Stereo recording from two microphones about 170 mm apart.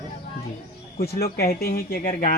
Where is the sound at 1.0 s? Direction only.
65° left (ahead or behind).